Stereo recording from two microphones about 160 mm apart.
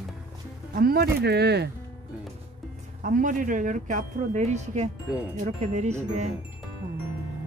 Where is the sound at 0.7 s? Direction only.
75° right (ahead or behind); by 1.7 s 90° right.